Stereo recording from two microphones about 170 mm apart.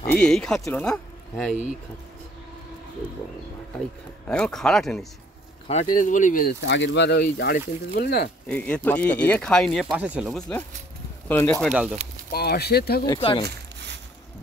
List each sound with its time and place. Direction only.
0.1 s speech: 5° left (ahead or behind)
4.3 s speech: 5° left (ahead or behind)
5.7 s speech: 45° left (ahead or behind)
6.6 s speech: 90° left; by 8.3 s 65° left (ahead or behind)
8.5 s speech: 5° left (ahead or behind)
9.9 s speech: 10° right (ahead or behind)
11.2 s speech: 10° left (ahead or behind)
12.3 s speech: 65° left (ahead or behind)
13.0 s speech: 25° left (ahead or behind)